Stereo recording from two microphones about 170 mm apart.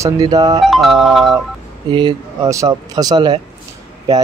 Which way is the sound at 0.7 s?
Centre (ahead or behind).